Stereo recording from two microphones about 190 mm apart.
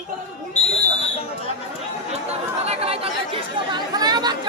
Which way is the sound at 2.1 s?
35° right (ahead or behind).